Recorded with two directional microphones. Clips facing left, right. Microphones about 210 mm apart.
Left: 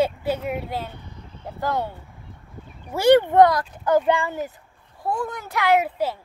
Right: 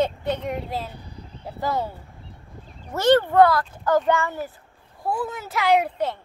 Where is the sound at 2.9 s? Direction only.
15° left (ahead or behind).